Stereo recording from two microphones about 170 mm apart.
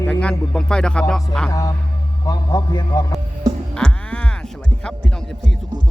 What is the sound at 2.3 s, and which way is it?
Speech, 25° left (ahead or behind).